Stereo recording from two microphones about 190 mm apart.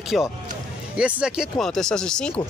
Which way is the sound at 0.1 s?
Centre (ahead or behind).